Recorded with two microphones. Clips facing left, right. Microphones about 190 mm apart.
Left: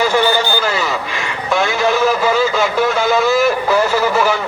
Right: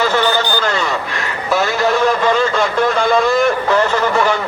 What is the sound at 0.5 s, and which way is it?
Vehicle, 5° left (ahead or behind).